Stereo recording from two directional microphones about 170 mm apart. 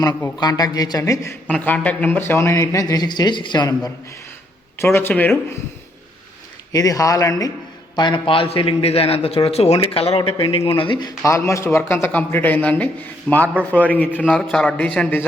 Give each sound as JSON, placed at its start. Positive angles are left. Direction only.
{"t": 0.3, "sound": "a man's voice", "side_deg": 25}
{"t": 6.7, "sound": "a man's voice", "side_deg": 20}
{"t": 11.2, "sound": "speech", "side_deg": 15}